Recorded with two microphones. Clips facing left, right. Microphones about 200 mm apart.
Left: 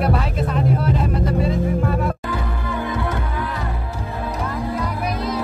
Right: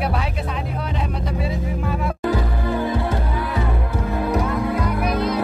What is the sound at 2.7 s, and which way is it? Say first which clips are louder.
Music: right 2 dB; 30° right (ahead or behind).